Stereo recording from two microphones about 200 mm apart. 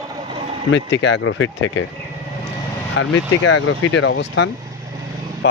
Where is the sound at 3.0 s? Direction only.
70° left (ahead or behind).